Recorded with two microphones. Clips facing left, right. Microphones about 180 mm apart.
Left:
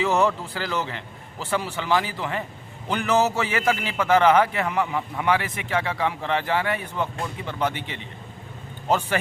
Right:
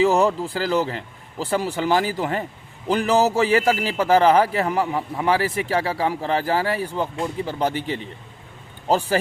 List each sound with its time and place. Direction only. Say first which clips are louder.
0.0 s a man's voice: right 4 dB; 35° right (ahead or behind)